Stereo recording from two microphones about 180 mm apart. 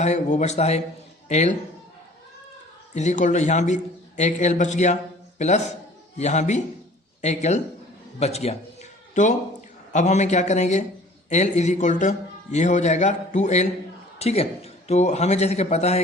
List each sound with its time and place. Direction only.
0.0 s a man's voice: 40° left (ahead or behind)
2.9 s a man's voice: 40° left (ahead or behind)